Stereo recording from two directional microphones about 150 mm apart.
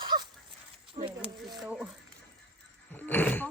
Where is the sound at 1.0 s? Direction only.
20° right (ahead or behind).